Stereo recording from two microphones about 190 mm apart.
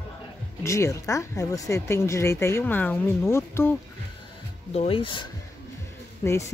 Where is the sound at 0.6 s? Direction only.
15° left (ahead or behind).